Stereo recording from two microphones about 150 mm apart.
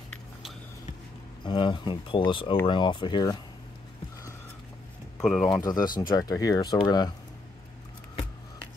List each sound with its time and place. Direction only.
1.4 s speech: 30° left (ahead or behind)
5.2 s speech: centre (ahead or behind)
5.6 s speech: 25° left (ahead or behind)